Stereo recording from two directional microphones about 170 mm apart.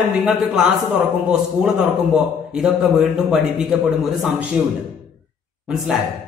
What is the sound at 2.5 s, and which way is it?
A man's voice, centre (ahead or behind).